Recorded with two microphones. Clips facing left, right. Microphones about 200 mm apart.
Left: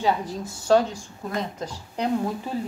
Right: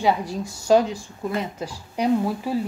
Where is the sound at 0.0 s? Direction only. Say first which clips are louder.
Right 2 dB; 10° right (ahead or behind).